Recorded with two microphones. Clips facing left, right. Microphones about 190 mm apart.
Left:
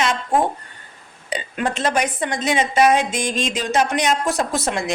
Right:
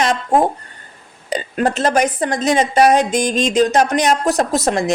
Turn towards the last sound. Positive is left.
turn(degrees=-40)  # may be behind; listen again after turning